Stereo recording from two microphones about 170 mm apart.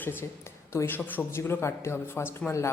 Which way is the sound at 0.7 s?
15° left (ahead or behind).